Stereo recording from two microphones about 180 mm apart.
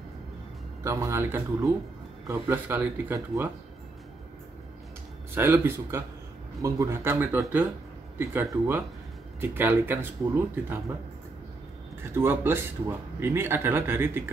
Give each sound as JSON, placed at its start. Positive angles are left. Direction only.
{"t": 0.8, "sound": "a man's voice", "side_deg": -15}
{"t": 5.3, "sound": "a man's voice", "side_deg": -15}
{"t": 12.0, "sound": "a man's voice", "side_deg": -10}